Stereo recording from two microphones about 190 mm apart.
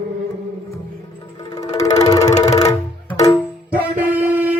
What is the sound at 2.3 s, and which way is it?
Music, 35° left (ahead or behind).